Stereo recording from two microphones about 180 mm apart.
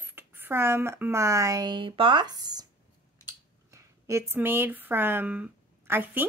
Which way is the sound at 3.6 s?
15° right (ahead or behind).